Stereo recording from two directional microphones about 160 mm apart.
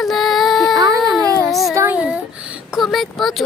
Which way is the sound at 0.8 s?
25° right (ahead or behind).